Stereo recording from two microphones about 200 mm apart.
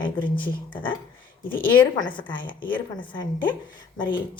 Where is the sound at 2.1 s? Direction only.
25° left (ahead or behind).